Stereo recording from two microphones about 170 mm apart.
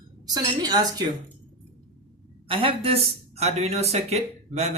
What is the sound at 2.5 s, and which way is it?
Speech, 35° right (ahead or behind).